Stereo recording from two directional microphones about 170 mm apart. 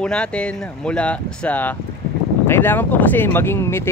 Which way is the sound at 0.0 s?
5° left (ahead or behind).